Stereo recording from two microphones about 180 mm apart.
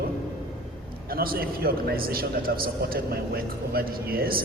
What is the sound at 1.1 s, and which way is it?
A man's voice, 55° right (ahead or behind).